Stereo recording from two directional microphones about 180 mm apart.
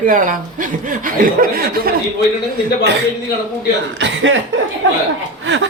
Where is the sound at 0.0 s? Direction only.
50° right (ahead or behind).